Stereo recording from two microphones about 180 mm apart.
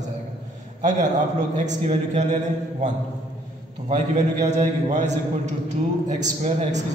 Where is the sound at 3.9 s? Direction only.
40° right (ahead or behind).